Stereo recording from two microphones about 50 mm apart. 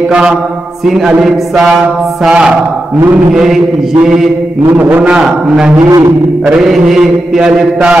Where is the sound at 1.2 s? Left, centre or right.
Centre.